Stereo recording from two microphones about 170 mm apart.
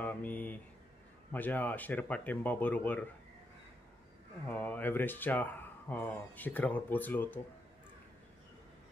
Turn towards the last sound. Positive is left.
turn(degrees=10)  # may be behind; listen again after turning